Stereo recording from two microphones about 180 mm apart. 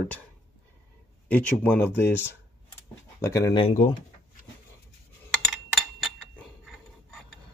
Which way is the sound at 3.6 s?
35° left (ahead or behind).